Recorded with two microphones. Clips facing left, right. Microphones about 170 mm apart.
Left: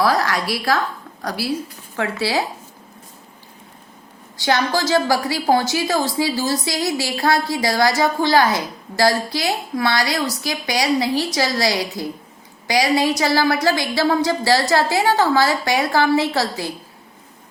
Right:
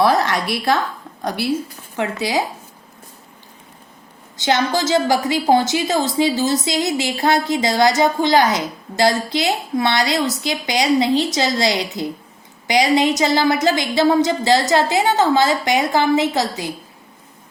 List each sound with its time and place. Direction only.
0.0 s a woman's voice: 25° right (ahead or behind)
4.4 s a woman's voice: 20° right (ahead or behind)